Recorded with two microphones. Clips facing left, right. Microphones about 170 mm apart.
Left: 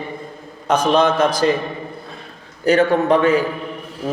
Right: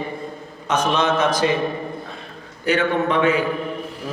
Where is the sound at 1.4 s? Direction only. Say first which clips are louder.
Left 4 dB; 45° left (ahead or behind).